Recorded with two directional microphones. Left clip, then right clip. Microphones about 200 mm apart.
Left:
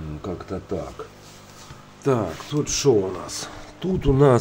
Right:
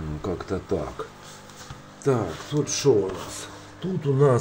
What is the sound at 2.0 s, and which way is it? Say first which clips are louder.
Speech: left 2 dB; 15° left (ahead or behind).